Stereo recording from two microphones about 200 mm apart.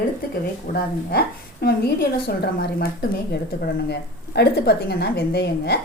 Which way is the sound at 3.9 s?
55° left (ahead or behind).